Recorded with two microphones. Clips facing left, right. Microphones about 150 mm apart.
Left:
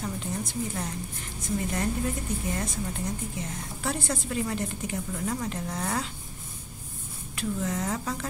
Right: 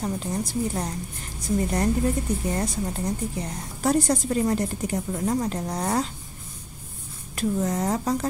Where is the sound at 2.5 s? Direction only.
35° right (ahead or behind).